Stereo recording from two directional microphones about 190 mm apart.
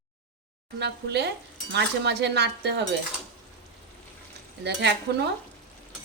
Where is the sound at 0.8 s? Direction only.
60° right (ahead or behind).